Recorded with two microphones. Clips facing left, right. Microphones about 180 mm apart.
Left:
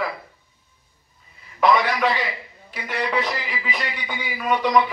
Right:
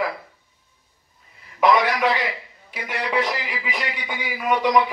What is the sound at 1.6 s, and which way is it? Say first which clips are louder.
Speech: right 1 dB; 15° right (ahead or behind).